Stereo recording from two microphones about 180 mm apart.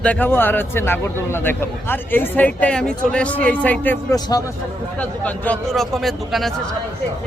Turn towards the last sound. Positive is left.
turn(degrees=0)  # may be behind; listen again after turning